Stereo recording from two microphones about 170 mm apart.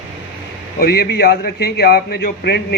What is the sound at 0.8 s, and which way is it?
A man's voice, 65° left (ahead or behind).